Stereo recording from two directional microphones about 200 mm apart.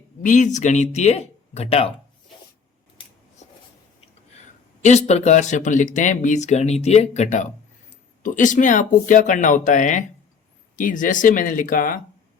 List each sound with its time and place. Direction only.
0.2 s speech: 40° left (ahead or behind)
4.8 s speech: 35° left (ahead or behind)